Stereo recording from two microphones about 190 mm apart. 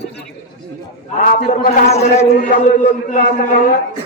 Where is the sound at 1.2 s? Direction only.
45° left (ahead or behind).